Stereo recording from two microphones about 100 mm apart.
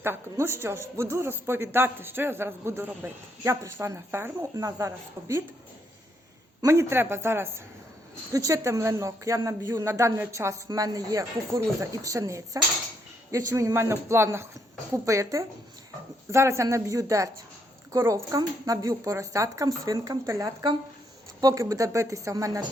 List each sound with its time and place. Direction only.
0.0 s speech: 25° right (ahead or behind)
6.6 s speech: 30° right (ahead or behind)